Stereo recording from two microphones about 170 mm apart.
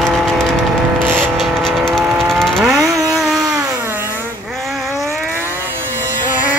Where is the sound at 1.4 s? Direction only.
Centre (ahead or behind).